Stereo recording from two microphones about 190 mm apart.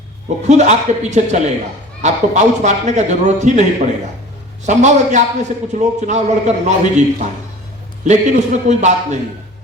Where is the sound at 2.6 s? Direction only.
35° right (ahead or behind).